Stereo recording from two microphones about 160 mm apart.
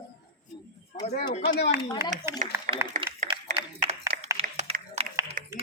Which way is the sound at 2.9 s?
50° right (ahead or behind).